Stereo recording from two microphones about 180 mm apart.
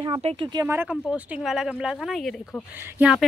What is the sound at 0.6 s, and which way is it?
A woman's voice, 10° right (ahead or behind).